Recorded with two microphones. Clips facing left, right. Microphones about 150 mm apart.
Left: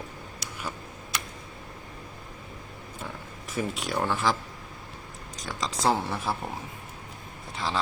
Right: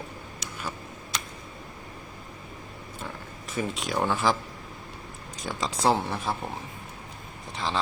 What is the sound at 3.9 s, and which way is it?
Speech, centre (ahead or behind).